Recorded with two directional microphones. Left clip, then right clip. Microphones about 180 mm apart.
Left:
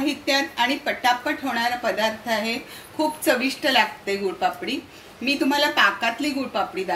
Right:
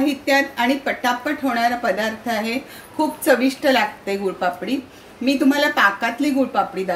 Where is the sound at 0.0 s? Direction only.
55° right (ahead or behind).